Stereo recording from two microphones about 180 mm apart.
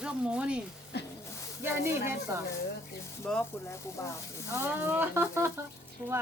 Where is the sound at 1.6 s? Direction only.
15° right (ahead or behind).